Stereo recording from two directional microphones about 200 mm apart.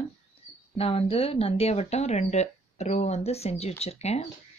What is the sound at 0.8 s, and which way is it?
Speech, 30° left (ahead or behind).